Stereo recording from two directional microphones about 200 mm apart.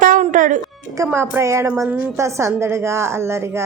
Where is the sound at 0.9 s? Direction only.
15° right (ahead or behind).